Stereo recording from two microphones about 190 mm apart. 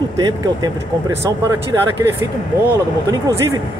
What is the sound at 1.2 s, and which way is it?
Speech, 15° right (ahead or behind).